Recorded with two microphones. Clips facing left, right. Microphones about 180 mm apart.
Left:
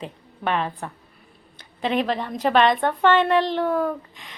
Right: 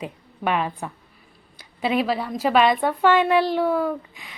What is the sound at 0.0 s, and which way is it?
A woman's voice, 10° right (ahead or behind).